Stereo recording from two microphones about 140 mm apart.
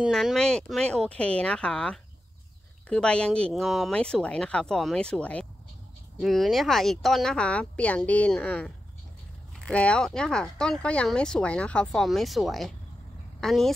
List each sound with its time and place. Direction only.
0.0 s speech: centre (ahead or behind)